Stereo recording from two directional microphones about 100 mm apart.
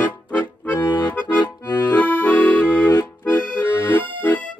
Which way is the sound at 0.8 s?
45° left (ahead or behind).